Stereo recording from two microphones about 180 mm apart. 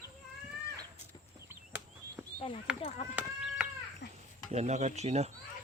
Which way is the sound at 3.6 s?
5° right (ahead or behind).